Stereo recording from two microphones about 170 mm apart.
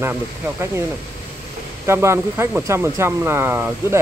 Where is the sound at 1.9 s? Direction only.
15° right (ahead or behind).